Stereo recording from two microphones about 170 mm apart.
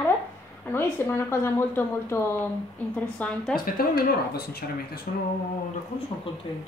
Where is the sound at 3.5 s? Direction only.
60° left (ahead or behind).